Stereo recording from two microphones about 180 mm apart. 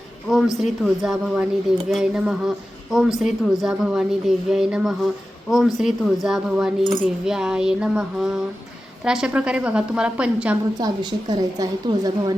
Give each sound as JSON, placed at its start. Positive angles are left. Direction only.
{"t": 0.5, "sound": "a woman's voice", "side_deg": 0}
{"t": 10.8, "sound": "a woman's voice", "side_deg": -20}